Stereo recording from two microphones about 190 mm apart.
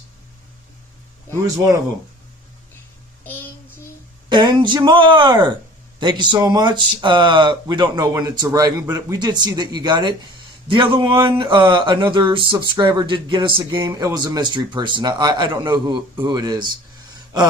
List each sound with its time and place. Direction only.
4.3 s speech: 25° right (ahead or behind)